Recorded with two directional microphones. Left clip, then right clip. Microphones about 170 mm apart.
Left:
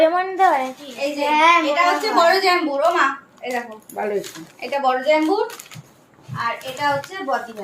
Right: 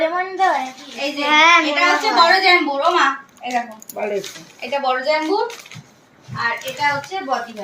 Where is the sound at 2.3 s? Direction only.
25° left (ahead or behind).